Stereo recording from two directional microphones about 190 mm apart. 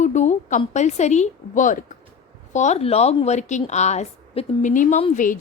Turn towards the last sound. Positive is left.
turn(degrees=40)  # may be behind; listen again after turning